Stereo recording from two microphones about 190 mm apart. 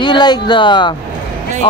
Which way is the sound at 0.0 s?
25° left (ahead or behind).